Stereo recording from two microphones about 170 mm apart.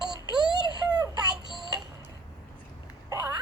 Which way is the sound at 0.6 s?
25° right (ahead or behind).